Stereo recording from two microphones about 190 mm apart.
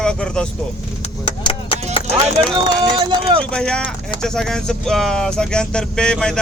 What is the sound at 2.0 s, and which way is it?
Music, 25° left (ahead or behind).